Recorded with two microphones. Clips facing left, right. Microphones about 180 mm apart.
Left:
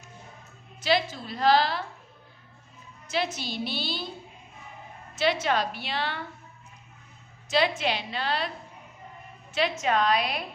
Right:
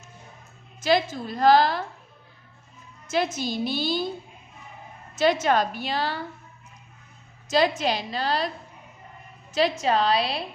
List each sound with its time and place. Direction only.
0.8 s a woman's voice: 45° right (ahead or behind)
3.1 s a woman's voice: 45° right (ahead or behind)
5.1 s a woman's voice: 45° right (ahead or behind)
7.4 s a sound: 40° right (ahead or behind)
7.8 s a woman's voice: 40° right (ahead or behind)
9.5 s a woman's voice: 35° right (ahead or behind)